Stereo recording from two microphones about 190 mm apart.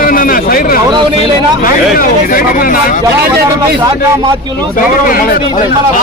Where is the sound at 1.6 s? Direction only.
50° left (ahead or behind).